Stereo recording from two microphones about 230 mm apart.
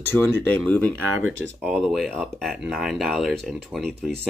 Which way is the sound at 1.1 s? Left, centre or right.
Right.